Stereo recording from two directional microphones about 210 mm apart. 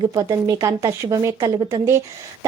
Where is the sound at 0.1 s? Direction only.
15° right (ahead or behind).